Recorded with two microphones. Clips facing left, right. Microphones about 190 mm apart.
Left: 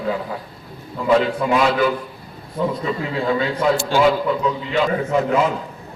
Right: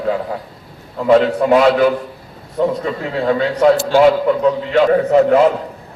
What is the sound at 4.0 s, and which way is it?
A man's voice, 65° right (ahead or behind).